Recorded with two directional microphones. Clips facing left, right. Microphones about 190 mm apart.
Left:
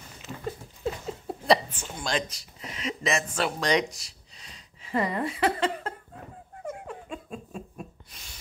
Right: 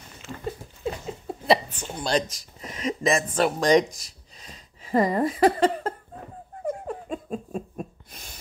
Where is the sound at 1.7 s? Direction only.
35° right (ahead or behind).